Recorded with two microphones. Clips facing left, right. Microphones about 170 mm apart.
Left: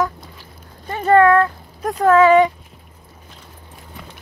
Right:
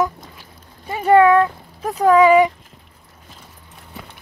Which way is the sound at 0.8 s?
10° right (ahead or behind).